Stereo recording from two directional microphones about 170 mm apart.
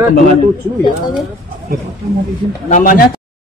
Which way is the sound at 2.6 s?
50° left (ahead or behind).